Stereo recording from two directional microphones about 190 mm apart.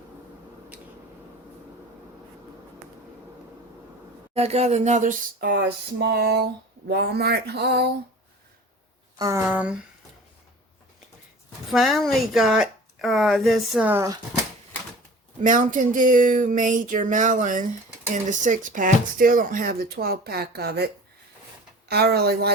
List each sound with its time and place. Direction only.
4.4 s speech: 35° right (ahead or behind)
5.4 s speech: 55° right (ahead or behind)
9.1 s speech: 20° right (ahead or behind)
9.5 s speech: 5° right (ahead or behind)
11.7 s speech: centre (ahead or behind)
15.4 s speech: 45° right (ahead or behind)